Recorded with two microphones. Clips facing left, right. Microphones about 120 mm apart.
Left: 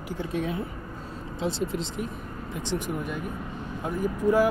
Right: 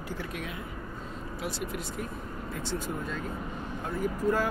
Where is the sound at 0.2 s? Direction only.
30° left (ahead or behind).